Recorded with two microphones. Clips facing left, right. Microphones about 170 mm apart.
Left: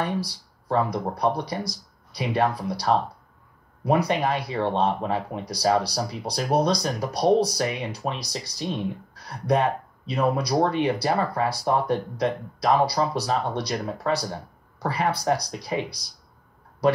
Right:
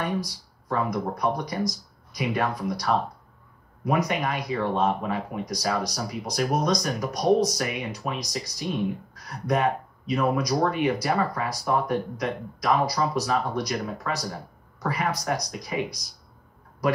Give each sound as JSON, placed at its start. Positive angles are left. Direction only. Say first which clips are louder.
{"t": 0.0, "sound": "speech", "louder": "left 1 dB", "side_deg": 30}